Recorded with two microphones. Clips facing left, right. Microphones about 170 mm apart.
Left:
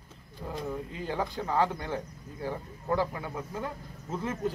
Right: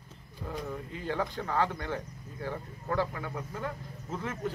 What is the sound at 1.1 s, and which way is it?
Speech, 20° left (ahead or behind).